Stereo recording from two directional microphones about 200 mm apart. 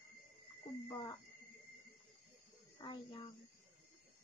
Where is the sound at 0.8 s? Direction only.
15° left (ahead or behind).